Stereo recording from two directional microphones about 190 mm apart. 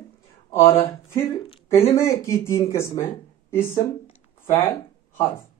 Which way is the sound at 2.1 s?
15° left (ahead or behind).